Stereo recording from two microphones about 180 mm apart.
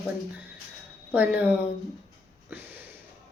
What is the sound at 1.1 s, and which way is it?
Speech, 10° right (ahead or behind).